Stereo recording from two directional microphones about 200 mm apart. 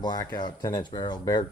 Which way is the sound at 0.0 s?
20° left (ahead or behind).